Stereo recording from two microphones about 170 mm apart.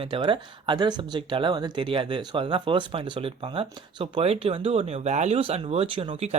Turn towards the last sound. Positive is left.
turn(degrees=-35)  # may be behind; listen again after turning